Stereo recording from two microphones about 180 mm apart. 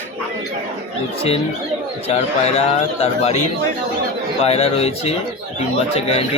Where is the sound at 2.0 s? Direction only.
35° left (ahead or behind).